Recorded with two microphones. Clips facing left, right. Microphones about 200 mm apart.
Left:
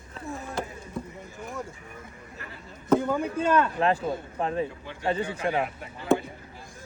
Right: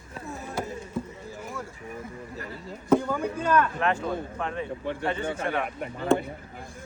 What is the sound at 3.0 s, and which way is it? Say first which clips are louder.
A man's voice: left 2 dB; 20° left (ahead or behind).